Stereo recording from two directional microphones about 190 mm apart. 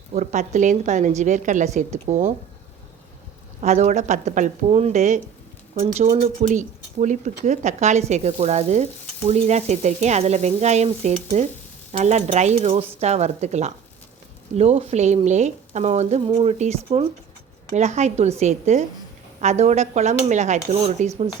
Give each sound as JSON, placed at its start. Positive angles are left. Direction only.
{"t": 0.1, "sound": "speech", "side_deg": -40}
{"t": 3.6, "sound": "speech", "side_deg": -40}